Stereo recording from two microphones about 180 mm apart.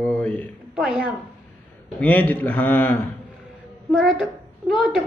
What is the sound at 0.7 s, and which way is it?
Speech, 5° right (ahead or behind).